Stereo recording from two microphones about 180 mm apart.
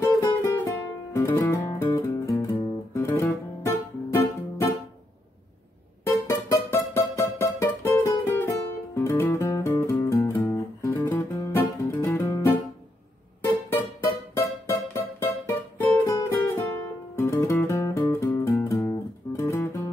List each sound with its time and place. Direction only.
0.0 s music: 15° left (ahead or behind)
6.0 s music: 15° left (ahead or behind)
13.4 s music: 10° left (ahead or behind)